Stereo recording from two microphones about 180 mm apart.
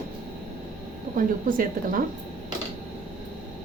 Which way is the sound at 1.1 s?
50° right (ahead or behind).